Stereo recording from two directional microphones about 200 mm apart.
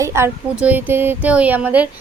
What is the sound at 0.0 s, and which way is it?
A woman's voice, 15° right (ahead or behind).